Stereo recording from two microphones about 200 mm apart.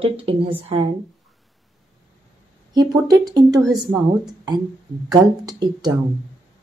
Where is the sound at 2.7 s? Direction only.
20° right (ahead or behind).